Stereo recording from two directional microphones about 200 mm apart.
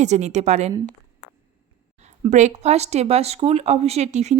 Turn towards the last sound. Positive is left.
turn(degrees=-35)  # may be behind; listen again after turning